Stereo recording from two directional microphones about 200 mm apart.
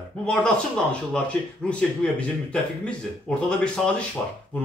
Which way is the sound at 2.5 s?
5° left (ahead or behind).